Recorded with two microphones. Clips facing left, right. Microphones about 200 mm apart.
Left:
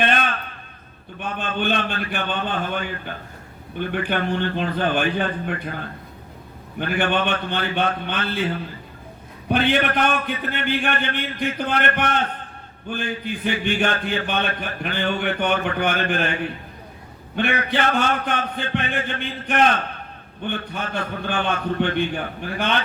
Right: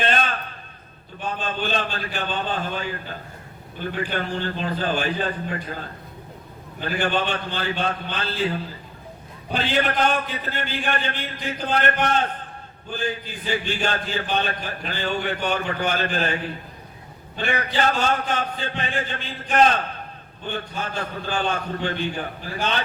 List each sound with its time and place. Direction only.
0.0 s a sound: 60° left (ahead or behind)
1.2 s a man's voice: 60° left (ahead or behind)
9.5 s a man's voice: 60° left (ahead or behind)
17.3 s a man's voice: 60° left (ahead or behind)